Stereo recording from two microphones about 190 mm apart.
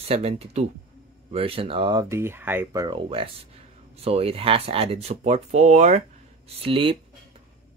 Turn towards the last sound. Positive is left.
turn(degrees=-30)  # may be behind; listen again after turning